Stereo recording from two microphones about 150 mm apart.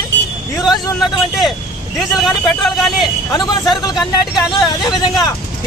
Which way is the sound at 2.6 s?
Centre (ahead or behind).